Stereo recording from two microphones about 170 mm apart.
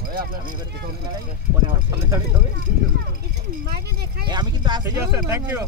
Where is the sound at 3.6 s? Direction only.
65° right (ahead or behind).